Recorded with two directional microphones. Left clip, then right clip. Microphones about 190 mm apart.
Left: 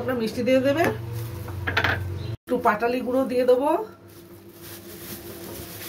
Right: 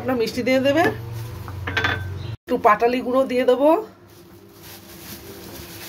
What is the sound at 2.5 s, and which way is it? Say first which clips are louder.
Speech: right 5 dB; 50° right (ahead or behind).